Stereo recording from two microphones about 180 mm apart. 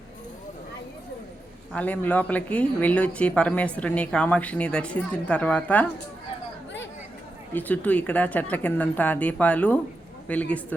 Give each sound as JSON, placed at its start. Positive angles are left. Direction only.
{"t": 1.7, "sound": "speech", "side_deg": 10}
{"t": 7.5, "sound": "speech", "side_deg": 10}